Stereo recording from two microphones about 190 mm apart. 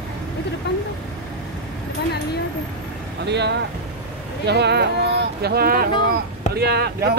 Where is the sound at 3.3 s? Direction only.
65° right (ahead or behind).